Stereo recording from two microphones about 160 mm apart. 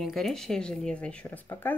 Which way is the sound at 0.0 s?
Centre (ahead or behind).